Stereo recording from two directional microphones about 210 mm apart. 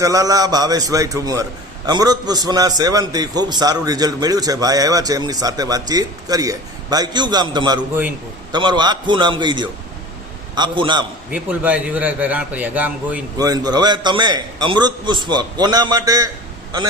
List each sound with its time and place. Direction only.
0.0 s a man's voice: 15° right (ahead or behind)
7.8 s a man's voice: 10° right (ahead or behind)
8.5 s a man's voice: 20° right (ahead or behind)
11.3 s a man's voice: 5° right (ahead or behind)
13.4 s a man's voice: 20° right (ahead or behind)